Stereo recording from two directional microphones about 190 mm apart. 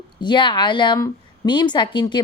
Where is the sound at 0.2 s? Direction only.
25° left (ahead or behind).